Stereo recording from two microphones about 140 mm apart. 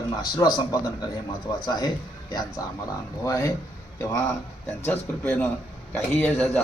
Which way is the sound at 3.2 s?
20° left (ahead or behind).